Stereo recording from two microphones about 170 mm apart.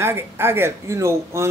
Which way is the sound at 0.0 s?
15° right (ahead or behind).